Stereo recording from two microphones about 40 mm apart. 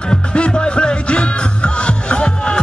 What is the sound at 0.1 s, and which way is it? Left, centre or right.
Music, left.